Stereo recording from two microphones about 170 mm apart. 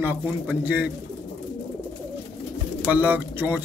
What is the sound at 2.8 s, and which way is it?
Speech, 10° right (ahead or behind).